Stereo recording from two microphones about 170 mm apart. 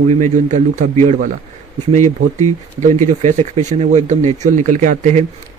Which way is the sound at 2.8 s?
45° right (ahead or behind).